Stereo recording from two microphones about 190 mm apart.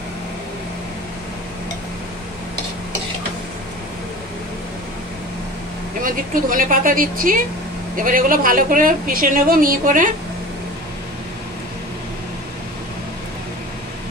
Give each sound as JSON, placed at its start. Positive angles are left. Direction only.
{"t": 6.0, "sound": "a woman's voice", "side_deg": -45}